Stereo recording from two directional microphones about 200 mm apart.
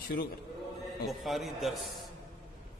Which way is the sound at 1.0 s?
Centre (ahead or behind).